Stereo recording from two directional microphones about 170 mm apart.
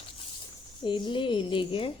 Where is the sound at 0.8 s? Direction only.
30° left (ahead or behind).